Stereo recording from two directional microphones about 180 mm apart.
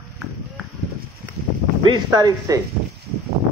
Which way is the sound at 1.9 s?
25° right (ahead or behind).